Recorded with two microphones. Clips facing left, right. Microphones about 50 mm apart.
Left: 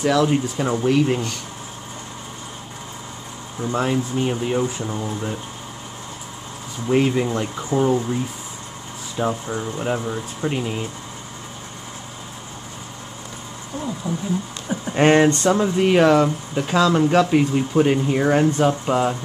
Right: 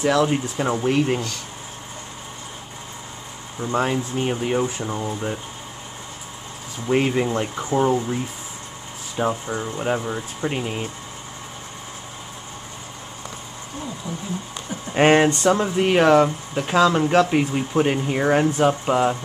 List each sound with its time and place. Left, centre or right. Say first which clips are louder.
0.0 s speech: left 1 dB; centre
3.7 s speech: even; centre
7.1 s speech: even; centre
15.0 s speech: left 1 dB; centre